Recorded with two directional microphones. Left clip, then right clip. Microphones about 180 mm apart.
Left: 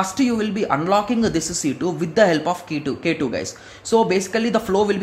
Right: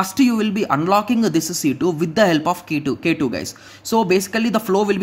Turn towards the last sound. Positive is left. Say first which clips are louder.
# right 1 dB
turn(degrees=-30)  # may be behind; listen again after turning